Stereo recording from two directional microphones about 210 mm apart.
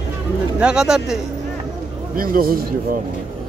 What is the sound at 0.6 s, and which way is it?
Speech, 5° right (ahead or behind).